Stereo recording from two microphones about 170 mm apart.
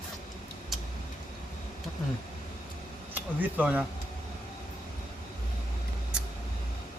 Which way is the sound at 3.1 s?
10° right (ahead or behind).